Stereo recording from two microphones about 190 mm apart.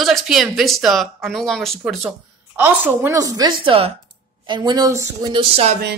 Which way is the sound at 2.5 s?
10° right (ahead or behind).